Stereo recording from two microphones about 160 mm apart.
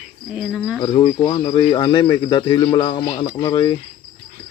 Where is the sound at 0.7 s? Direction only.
30° left (ahead or behind).